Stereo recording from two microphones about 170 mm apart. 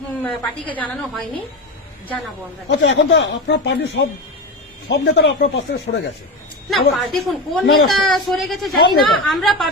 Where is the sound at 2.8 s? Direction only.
90° left.